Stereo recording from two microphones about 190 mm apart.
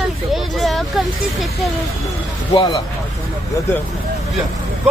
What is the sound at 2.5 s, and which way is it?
Speech, 20° left (ahead or behind).